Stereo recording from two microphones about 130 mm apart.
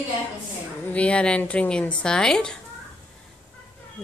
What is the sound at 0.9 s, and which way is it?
A woman's voice, 10° left (ahead or behind).